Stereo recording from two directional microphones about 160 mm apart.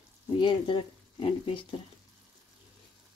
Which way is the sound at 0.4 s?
30° left (ahead or behind).